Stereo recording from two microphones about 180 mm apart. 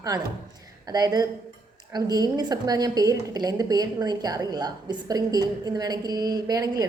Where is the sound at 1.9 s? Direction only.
20° right (ahead or behind).